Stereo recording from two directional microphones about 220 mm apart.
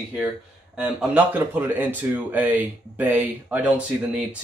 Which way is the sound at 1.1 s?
10° right (ahead or behind).